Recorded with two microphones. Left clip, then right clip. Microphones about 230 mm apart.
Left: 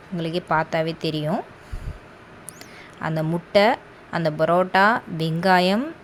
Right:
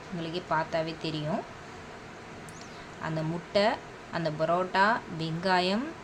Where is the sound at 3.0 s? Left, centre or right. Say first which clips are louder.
Left 8 dB; left.